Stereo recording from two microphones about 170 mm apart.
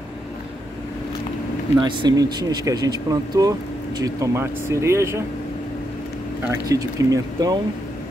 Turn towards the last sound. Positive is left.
turn(degrees=-20)  # may be behind; listen again after turning